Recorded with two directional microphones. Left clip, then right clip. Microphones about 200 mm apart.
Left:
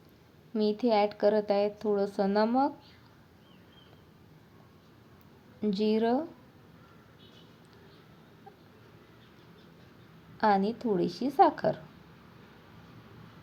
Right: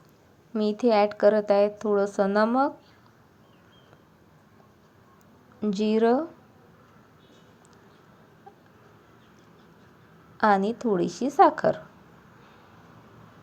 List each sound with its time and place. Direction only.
0.5 s a woman's voice: 15° right (ahead or behind)
5.5 s a woman's voice: 10° right (ahead or behind)
10.3 s a woman's voice: 15° right (ahead or behind)